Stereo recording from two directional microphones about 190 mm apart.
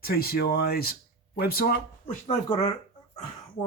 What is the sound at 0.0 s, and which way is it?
Speech, 55° left (ahead or behind).